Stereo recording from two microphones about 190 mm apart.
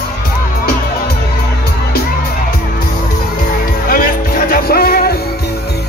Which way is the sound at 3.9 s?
50° left (ahead or behind).